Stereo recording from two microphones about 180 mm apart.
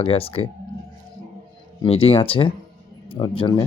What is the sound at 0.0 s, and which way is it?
Speech, 30° left (ahead or behind).